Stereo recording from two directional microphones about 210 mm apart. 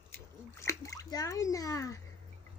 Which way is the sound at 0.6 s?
15° left (ahead or behind).